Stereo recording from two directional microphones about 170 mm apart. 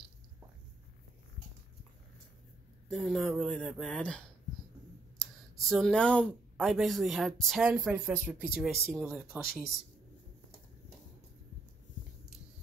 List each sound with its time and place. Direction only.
2.9 s speech: centre (ahead or behind)
5.2 s speech: centre (ahead or behind)